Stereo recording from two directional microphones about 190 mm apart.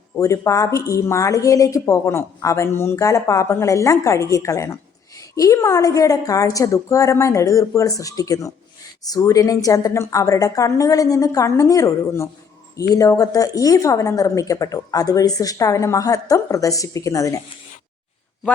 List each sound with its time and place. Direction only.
0.2 s a woman's voice: 15° left (ahead or behind)